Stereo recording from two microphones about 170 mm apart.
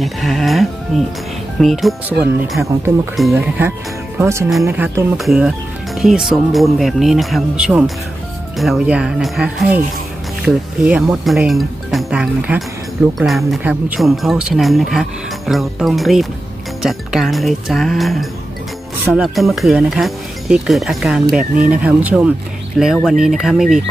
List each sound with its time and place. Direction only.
0.0 s speech: centre (ahead or behind)